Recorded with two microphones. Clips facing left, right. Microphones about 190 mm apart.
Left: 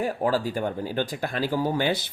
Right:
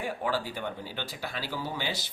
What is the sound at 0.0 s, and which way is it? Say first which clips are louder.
Speech: left 7 dB; 40° left (ahead or behind).